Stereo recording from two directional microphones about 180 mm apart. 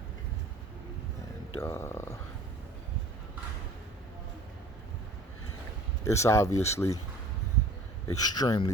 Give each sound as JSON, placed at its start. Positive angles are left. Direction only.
{"t": 1.6, "sound": "speech", "side_deg": 15}
{"t": 6.1, "sound": "speech", "side_deg": 15}
{"t": 8.0, "sound": "speech", "side_deg": 20}